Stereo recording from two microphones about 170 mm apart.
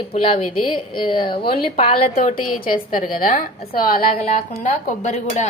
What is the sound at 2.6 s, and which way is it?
Speech, 55° left (ahead or behind).